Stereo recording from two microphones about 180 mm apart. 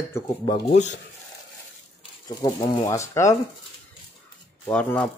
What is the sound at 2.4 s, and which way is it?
Speech, 25° left (ahead or behind).